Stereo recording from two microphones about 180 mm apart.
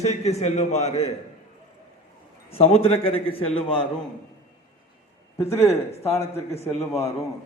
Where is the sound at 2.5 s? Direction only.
35° left (ahead or behind).